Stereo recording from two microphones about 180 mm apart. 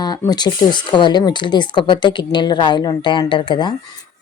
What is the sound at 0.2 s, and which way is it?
Speech, 20° left (ahead or behind).